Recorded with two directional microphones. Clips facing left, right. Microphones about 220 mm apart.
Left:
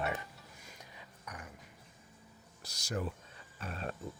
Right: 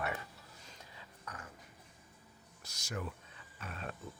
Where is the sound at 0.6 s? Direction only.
15° left (ahead or behind).